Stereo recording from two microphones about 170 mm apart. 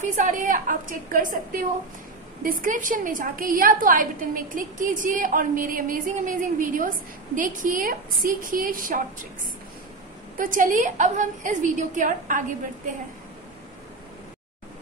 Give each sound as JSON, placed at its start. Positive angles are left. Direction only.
{"t": 0.0, "sound": "a woman's voice", "side_deg": -50}
{"t": 2.4, "sound": "a woman's voice", "side_deg": -55}
{"t": 10.3, "sound": "a woman's voice", "side_deg": -50}